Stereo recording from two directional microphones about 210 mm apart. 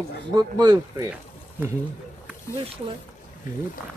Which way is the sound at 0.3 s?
20° right (ahead or behind).